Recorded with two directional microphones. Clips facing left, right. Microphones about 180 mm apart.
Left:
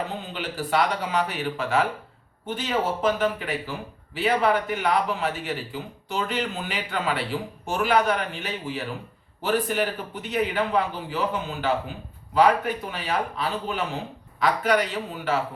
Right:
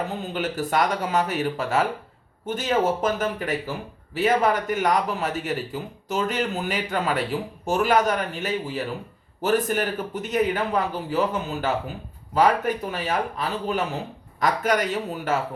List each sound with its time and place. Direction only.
0.2 s a man's voice: 45° right (ahead or behind)